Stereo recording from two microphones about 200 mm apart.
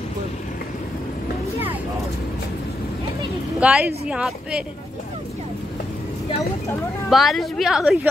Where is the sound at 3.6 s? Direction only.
5° right (ahead or behind).